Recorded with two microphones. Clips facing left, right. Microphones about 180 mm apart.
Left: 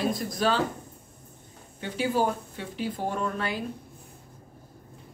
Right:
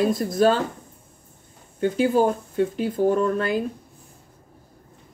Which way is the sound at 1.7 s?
50° right (ahead or behind).